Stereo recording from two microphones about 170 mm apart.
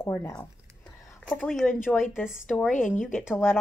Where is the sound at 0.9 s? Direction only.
5° left (ahead or behind).